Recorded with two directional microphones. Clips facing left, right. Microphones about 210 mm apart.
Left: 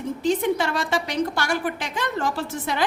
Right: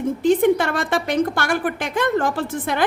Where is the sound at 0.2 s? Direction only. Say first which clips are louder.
Right 6 dB; 55° right (ahead or behind).